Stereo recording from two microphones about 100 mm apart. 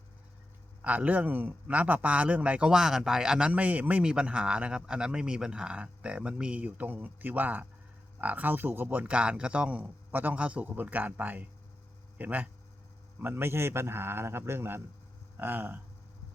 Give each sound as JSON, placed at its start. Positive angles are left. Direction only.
{"t": 0.8, "sound": "a man's voice", "side_deg": -15}